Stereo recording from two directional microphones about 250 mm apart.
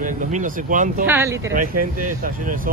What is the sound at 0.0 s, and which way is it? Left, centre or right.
Speech, right.